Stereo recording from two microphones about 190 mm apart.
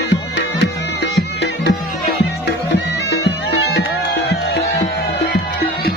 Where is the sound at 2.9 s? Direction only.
65° left (ahead or behind).